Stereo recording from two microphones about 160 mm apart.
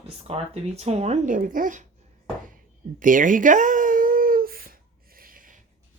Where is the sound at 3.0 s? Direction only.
55° right (ahead or behind).